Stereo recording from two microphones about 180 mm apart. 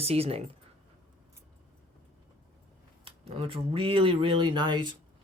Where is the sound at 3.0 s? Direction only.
30° right (ahead or behind).